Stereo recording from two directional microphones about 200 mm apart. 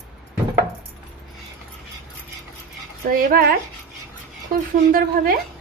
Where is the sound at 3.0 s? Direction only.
50° right (ahead or behind).